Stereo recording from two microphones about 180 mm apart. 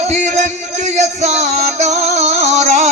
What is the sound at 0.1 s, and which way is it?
Music, 40° right (ahead or behind).